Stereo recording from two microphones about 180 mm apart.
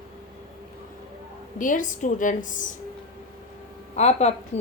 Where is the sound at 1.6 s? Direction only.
45° left (ahead or behind).